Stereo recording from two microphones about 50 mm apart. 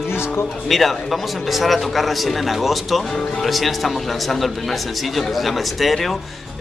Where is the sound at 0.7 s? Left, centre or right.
Centre.